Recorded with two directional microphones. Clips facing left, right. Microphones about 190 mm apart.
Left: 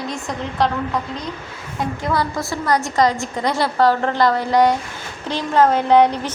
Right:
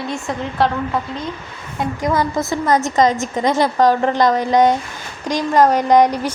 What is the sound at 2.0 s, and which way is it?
A woman's voice, 20° right (ahead or behind).